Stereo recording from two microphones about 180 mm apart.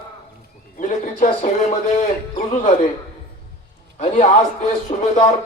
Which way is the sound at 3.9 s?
40° left (ahead or behind).